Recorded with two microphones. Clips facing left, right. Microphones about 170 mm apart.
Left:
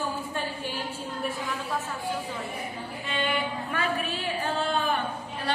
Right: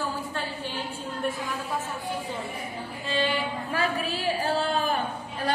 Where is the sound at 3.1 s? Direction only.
35° right (ahead or behind).